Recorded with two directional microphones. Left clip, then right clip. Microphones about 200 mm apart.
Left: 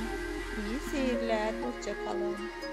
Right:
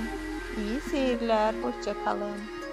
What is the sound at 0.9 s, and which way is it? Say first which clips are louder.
Music: right 5 dB; 10° right (ahead or behind).